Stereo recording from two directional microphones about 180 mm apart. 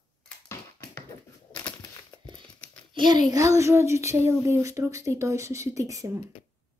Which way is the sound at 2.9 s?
25° right (ahead or behind).